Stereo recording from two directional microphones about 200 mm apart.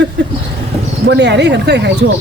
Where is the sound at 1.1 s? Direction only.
60° right (ahead or behind).